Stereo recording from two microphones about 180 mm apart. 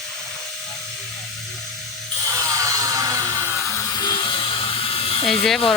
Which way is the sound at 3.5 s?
15° left (ahead or behind).